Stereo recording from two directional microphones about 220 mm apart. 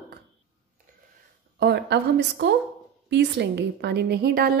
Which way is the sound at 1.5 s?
50° right (ahead or behind).